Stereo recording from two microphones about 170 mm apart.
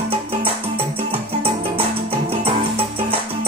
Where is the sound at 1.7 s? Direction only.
35° right (ahead or behind).